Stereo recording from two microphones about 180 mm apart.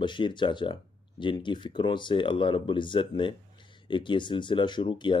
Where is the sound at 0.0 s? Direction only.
25° left (ahead or behind).